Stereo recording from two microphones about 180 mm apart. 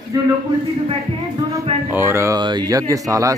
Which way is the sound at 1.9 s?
15° right (ahead or behind).